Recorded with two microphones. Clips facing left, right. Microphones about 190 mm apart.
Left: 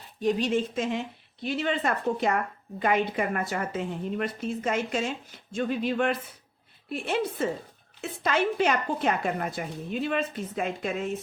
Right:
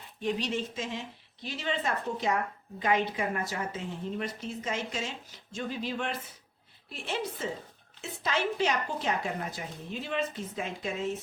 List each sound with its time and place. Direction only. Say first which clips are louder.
0.2 s speech: left 6 dB; 45° left (ahead or behind)